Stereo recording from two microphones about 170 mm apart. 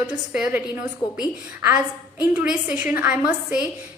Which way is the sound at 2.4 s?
10° right (ahead or behind).